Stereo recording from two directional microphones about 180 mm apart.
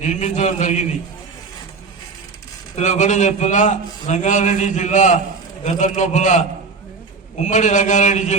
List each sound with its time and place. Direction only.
0.0 s a man's voice: 40° left (ahead or behind)
2.7 s a man's voice: 40° left (ahead or behind)